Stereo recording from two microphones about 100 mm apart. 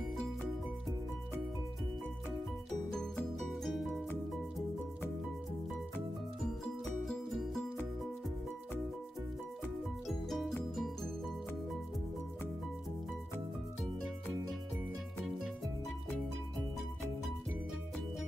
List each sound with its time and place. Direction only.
2.7 s music: 5° left (ahead or behind)
6.8 s music: centre (ahead or behind)
10.0 s music: centre (ahead or behind)